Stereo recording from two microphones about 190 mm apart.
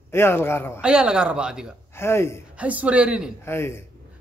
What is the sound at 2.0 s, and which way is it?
Speech, 15° left (ahead or behind).